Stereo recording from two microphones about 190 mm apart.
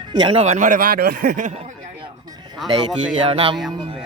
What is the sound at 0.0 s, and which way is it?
Speech, 25° right (ahead or behind).